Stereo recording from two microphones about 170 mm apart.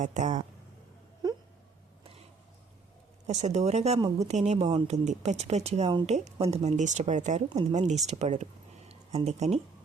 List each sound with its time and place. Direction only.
0.0 s speech: 45° right (ahead or behind)
1.2 s whimper: 25° right (ahead or behind)
3.2 s speech: 40° right (ahead or behind)